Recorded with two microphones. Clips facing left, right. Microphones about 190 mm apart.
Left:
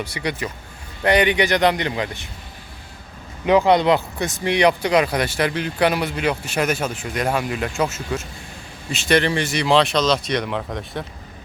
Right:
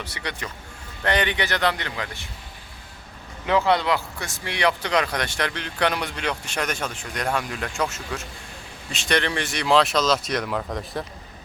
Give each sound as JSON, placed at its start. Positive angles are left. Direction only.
{"t": 0.0, "sound": "speech", "side_deg": 10}
{"t": 3.4, "sound": "speech", "side_deg": 15}